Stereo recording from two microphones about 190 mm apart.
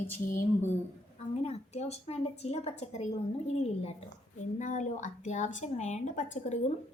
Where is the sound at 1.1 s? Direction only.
35° left (ahead or behind).